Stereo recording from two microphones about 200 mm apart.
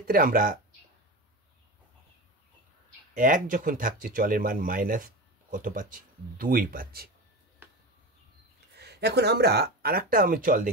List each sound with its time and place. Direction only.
0.0 s speech: 45° right (ahead or behind)
3.2 s speech: 40° right (ahead or behind)
8.7 s speech: 55° right (ahead or behind)